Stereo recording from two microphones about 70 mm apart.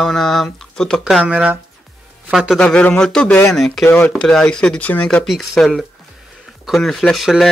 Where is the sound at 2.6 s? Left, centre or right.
Centre.